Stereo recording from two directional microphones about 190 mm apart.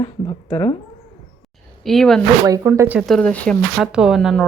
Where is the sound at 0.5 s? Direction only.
25° left (ahead or behind).